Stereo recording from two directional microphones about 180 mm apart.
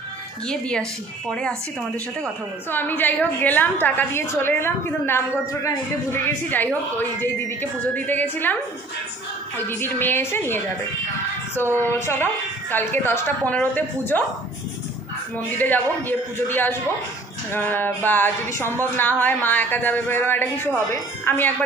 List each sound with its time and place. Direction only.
0.5 s speech: 5° left (ahead or behind)
9.7 s speech: 10° left (ahead or behind)
11.8 s speech: 10° left (ahead or behind)
15.5 s speech: 10° left (ahead or behind)